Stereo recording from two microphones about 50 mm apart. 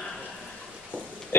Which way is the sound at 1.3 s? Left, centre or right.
Left.